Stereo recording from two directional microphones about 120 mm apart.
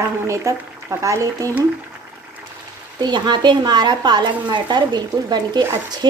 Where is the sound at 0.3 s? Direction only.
25° right (ahead or behind).